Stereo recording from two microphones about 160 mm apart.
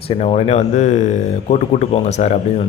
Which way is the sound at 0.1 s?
40° left (ahead or behind).